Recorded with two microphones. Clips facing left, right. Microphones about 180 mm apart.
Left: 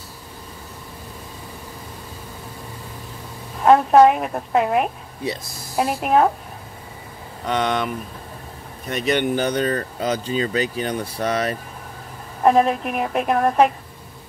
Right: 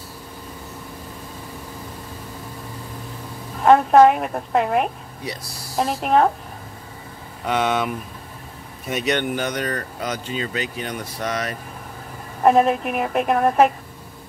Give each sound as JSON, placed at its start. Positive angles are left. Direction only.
{"t": 3.6, "sound": "a woman's voice", "side_deg": 0}
{"t": 7.4, "sound": "speech", "side_deg": -5}
{"t": 9.3, "sound": "speech", "side_deg": 30}
{"t": 12.4, "sound": "a woman's voice", "side_deg": 0}